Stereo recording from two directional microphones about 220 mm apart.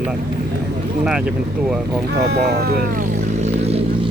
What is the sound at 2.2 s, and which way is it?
Vehicle, 50° right (ahead or behind).